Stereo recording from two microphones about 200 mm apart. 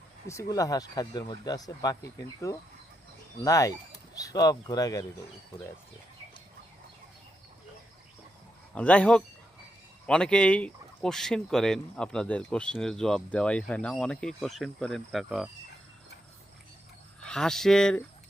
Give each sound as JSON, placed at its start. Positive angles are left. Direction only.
{"t": 0.3, "sound": "speech", "side_deg": 15}
{"t": 8.7, "sound": "speech", "side_deg": 5}
{"t": 17.2, "sound": "speech", "side_deg": 5}